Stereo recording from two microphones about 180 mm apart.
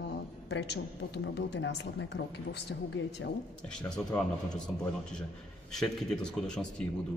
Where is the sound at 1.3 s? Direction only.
80° left.